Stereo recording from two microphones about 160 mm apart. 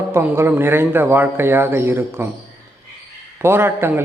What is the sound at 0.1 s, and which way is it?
A man's voice, 15° right (ahead or behind).